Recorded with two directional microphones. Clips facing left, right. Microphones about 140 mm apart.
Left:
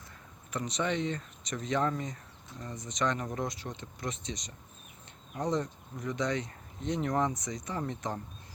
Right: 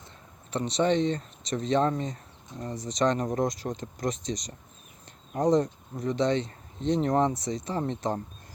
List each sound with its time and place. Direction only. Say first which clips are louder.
0.5 s speech: right 7 dB; 30° right (ahead or behind)